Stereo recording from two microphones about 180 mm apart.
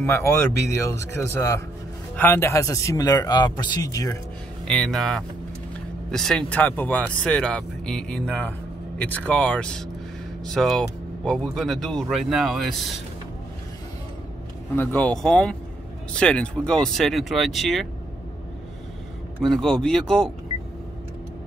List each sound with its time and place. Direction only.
0.0 s speech: 15° left (ahead or behind)
4.6 s speech: 5° left (ahead or behind)
14.8 s speech: 10° left (ahead or behind)
19.4 s speech: 5° left (ahead or behind)